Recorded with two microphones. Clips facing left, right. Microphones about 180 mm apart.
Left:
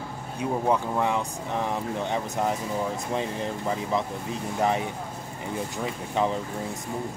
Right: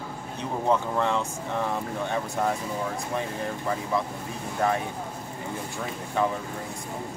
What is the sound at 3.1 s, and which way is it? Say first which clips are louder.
Speech: left 1 dB; 20° left (ahead or behind).